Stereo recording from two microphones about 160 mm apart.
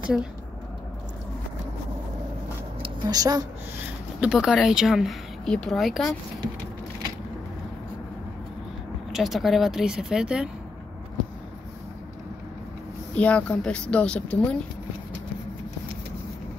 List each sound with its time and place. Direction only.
2.8 s speech: 25° right (ahead or behind)
4.2 s speech: 5° right (ahead or behind)
9.1 s speech: centre (ahead or behind)
13.1 s speech: 10° left (ahead or behind)